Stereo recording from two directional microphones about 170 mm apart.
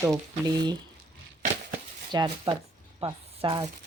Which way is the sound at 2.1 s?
25° right (ahead or behind).